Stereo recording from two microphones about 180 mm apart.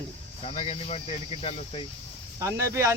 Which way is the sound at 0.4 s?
35° left (ahead or behind).